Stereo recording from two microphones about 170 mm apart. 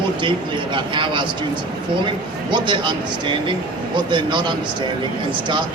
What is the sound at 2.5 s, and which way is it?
A man's voice, 25° right (ahead or behind).